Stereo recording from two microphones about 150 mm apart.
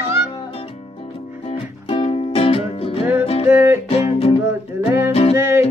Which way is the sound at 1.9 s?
35° left (ahead or behind).